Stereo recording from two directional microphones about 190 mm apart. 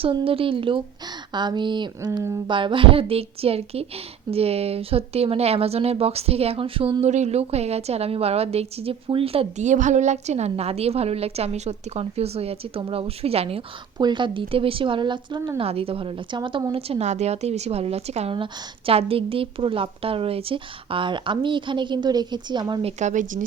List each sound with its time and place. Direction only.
0.0 s a woman's voice: 25° right (ahead or behind); by 23.5 s 45° right (ahead or behind)